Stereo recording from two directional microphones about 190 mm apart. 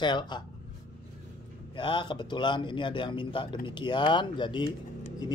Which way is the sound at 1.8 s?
25° left (ahead or behind).